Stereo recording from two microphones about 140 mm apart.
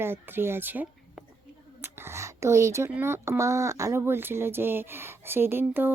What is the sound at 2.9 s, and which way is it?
Speech, 15° right (ahead or behind).